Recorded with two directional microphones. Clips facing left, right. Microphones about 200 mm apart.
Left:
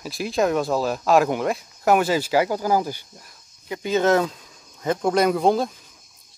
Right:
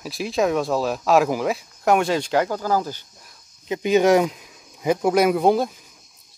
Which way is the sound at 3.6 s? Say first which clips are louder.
Right 3 dB; 20° right (ahead or behind).